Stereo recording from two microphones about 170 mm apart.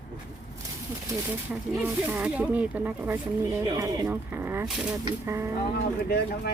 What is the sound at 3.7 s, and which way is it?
Speech, 20° right (ahead or behind).